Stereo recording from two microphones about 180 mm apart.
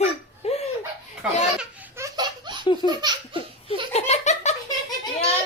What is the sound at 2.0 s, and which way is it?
Laughter, 25° right (ahead or behind).